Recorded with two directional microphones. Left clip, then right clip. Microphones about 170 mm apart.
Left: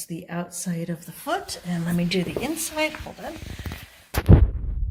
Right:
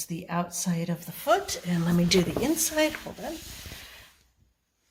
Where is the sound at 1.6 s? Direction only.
20° right (ahead or behind).